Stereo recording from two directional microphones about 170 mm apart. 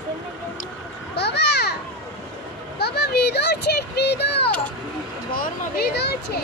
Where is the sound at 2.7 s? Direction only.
70° left (ahead or behind).